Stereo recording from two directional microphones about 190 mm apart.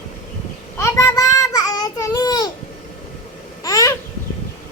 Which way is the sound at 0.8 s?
15° left (ahead or behind).